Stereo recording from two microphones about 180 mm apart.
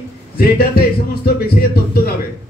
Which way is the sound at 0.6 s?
60° left (ahead or behind).